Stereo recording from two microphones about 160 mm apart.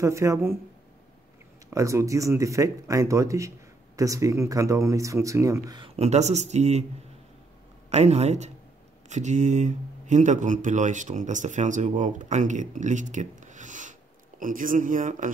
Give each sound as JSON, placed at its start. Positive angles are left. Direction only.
{"t": 0.0, "sound": "speech", "side_deg": -20}
{"t": 1.7, "sound": "speech", "side_deg": -20}
{"t": 5.8, "sound": "speech", "side_deg": -45}
{"t": 7.9, "sound": "speech", "side_deg": -40}